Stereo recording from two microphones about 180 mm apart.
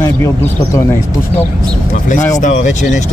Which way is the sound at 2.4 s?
45° left (ahead or behind).